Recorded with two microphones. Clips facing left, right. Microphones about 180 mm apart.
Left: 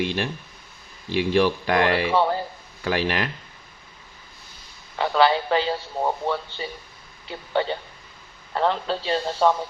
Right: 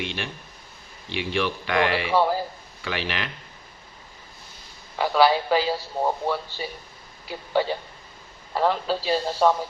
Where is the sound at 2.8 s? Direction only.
40° left (ahead or behind).